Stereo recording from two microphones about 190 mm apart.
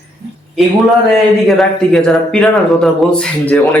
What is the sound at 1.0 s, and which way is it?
Speech, centre (ahead or behind).